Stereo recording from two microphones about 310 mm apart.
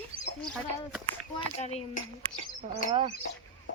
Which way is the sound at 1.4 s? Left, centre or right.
Left.